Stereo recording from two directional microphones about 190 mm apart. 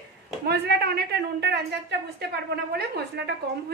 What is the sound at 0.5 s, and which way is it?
A woman's voice, 60° right (ahead or behind).